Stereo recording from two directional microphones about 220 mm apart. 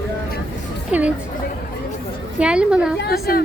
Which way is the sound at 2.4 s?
5° right (ahead or behind).